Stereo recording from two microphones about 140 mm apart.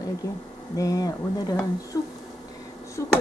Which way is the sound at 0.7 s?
25° left (ahead or behind).